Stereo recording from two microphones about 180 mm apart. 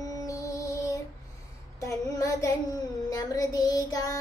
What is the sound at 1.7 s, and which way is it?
Child singing, 15° left (ahead or behind).